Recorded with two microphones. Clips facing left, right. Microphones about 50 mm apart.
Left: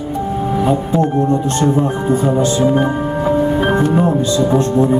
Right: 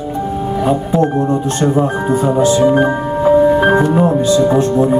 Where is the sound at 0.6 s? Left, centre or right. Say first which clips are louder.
Right 2 dB; right.